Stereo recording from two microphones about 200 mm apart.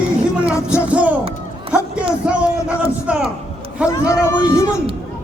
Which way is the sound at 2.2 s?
5° right (ahead or behind).